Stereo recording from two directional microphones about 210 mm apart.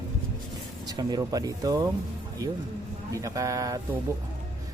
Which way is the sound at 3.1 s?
15° right (ahead or behind).